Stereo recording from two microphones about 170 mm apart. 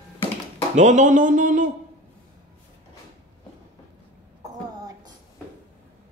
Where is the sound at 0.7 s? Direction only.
45° right (ahead or behind).